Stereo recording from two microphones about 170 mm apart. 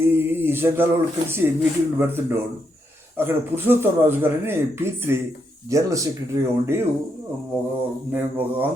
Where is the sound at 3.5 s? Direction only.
15° right (ahead or behind).